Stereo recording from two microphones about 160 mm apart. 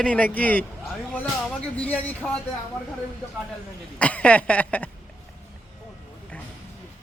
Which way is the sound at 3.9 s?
10° left (ahead or behind).